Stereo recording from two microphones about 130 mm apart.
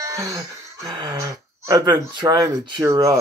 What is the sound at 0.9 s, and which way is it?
Speech, 35° right (ahead or behind).